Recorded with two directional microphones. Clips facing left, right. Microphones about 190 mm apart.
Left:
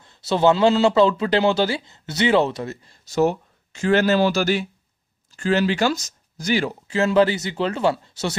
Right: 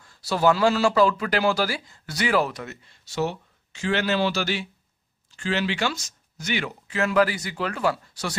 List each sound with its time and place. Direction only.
0.0 s speech: 25° left (ahead or behind)